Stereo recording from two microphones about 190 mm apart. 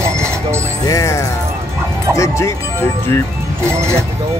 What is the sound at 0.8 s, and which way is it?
Music, 20° left (ahead or behind).